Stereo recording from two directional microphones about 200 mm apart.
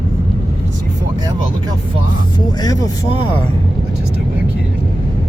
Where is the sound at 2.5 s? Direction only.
20° left (ahead or behind).